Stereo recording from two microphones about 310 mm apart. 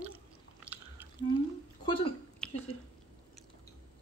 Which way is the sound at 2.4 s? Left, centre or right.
Centre.